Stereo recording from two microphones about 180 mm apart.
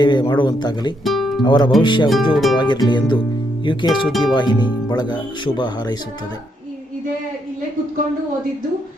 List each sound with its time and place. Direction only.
0.0 s speech: 25° left (ahead or behind)
1.0 s music: centre (ahead or behind)
1.5 s speech: 25° left (ahead or behind)
2.3 s speech: centre (ahead or behind)
2.6 s speech: 25° left (ahead or behind)